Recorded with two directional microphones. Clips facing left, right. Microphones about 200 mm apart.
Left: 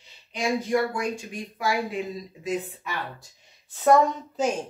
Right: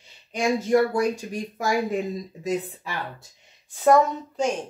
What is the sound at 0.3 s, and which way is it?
Speech, 45° right (ahead or behind).